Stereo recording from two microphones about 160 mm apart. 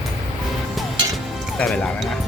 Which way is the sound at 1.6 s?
5° left (ahead or behind).